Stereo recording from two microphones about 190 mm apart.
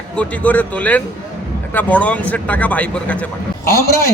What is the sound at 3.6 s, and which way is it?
Speech, 55° left (ahead or behind).